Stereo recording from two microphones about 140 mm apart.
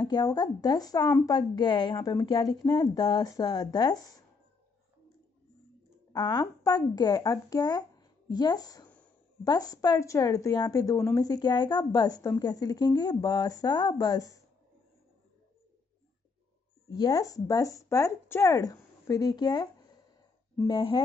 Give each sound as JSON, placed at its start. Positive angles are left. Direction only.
{"t": 0.0, "sound": "a woman's voice", "side_deg": 30}
{"t": 6.1, "sound": "a woman's voice", "side_deg": 30}
{"t": 16.9, "sound": "a woman's voice", "side_deg": 25}